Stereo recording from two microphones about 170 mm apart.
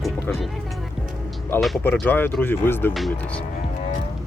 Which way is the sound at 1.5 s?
10° left (ahead or behind).